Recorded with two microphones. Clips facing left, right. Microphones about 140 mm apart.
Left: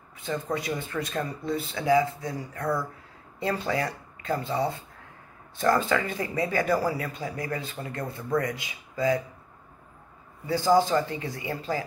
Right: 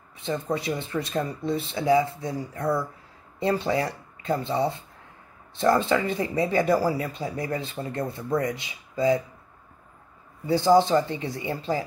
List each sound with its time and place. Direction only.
0.2 s speech: 25° right (ahead or behind)
10.4 s speech: 25° right (ahead or behind)